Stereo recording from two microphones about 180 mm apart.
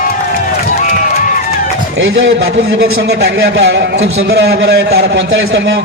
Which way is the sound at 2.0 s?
90° right.